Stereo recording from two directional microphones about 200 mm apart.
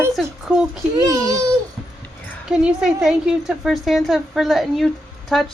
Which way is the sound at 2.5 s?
5° right (ahead or behind).